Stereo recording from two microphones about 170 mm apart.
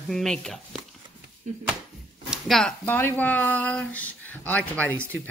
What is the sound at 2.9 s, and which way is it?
Speech, 10° left (ahead or behind).